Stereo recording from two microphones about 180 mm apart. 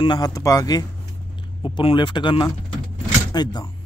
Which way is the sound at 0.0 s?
25° left (ahead or behind).